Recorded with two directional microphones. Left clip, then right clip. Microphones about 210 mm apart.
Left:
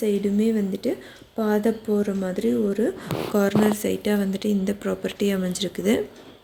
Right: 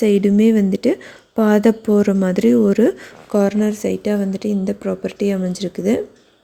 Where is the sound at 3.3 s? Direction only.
25° right (ahead or behind).